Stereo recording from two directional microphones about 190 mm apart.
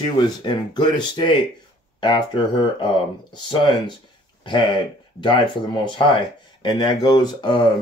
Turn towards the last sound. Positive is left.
turn(degrees=25)  # may be behind; listen again after turning